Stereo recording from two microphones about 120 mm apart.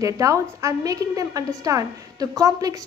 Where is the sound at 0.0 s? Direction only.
25° right (ahead or behind).